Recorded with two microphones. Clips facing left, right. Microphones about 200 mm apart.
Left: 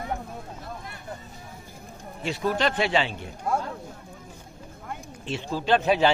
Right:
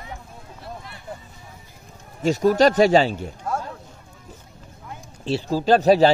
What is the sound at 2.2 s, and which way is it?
Speech, 40° right (ahead or behind).